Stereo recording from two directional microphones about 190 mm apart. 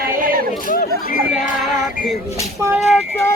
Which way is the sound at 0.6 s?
50° left (ahead or behind).